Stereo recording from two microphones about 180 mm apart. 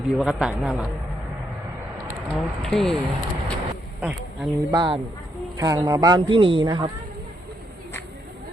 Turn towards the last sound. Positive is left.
turn(degrees=-25)  # may be behind; listen again after turning